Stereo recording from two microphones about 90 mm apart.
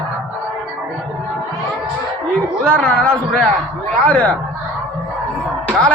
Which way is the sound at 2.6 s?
15° left (ahead or behind).